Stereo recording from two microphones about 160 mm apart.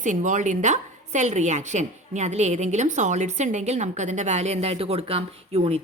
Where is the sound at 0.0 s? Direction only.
50° right (ahead or behind).